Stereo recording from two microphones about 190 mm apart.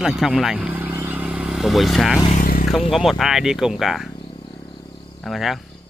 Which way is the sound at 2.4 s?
50° left (ahead or behind).